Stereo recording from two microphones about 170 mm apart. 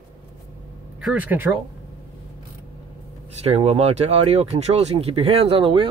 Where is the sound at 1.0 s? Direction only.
5° right (ahead or behind).